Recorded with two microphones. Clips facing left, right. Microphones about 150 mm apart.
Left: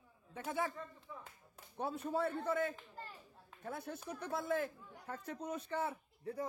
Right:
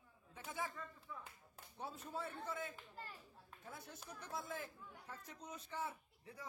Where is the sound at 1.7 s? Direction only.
60° left (ahead or behind).